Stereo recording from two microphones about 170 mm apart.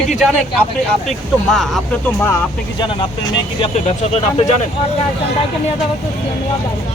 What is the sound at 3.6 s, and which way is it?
Speech, 40° left (ahead or behind).